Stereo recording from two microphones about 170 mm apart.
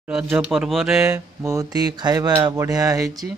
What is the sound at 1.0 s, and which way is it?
Speech, 20° right (ahead or behind).